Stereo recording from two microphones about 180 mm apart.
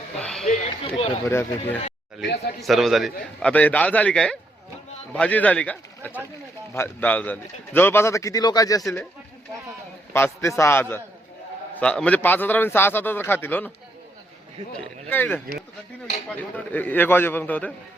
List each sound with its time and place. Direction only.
0.2 s music: 5° left (ahead or behind)
0.4 s speech: 35° left (ahead or behind)
1.3 s speech: 10° left (ahead or behind)
2.6 s a man's voice: centre (ahead or behind); by 8.8 s 20° left (ahead or behind)
10.1 s speech: 10° left (ahead or behind)
14.7 s speech: 10° left (ahead or behind)
16.4 s speech: 10° left (ahead or behind)